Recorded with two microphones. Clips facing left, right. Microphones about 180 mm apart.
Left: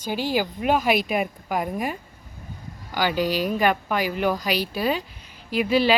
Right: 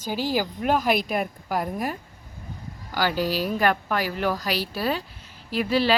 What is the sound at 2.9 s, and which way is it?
Speech, 15° left (ahead or behind).